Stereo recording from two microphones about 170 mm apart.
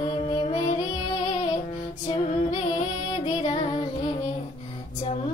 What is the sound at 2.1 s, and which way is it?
Music, 30° left (ahead or behind).